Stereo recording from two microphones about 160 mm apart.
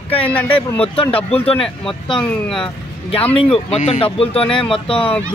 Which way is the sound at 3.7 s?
45° left (ahead or behind).